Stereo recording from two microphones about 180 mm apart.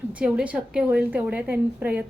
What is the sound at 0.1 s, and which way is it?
A woman's voice, 5° right (ahead or behind).